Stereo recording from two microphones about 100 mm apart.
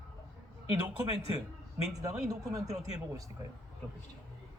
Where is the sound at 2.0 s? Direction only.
35° right (ahead or behind).